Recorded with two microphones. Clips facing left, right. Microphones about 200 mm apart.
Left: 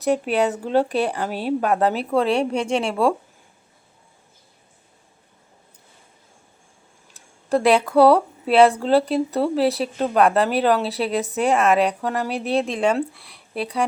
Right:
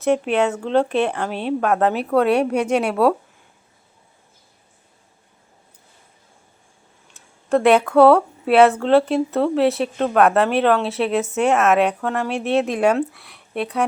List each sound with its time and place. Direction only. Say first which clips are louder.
0.0 s speech: right 2 dB; centre (ahead or behind)
7.9 s speech: right 1 dB; centre (ahead or behind)